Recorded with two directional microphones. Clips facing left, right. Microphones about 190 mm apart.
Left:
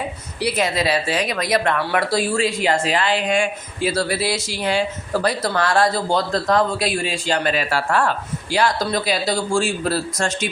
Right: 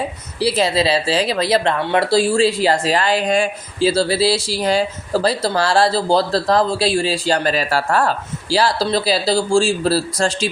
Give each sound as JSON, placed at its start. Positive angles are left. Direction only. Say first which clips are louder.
{"t": 0.3, "sound": "speech", "louder": "right 4 dB", "side_deg": -30}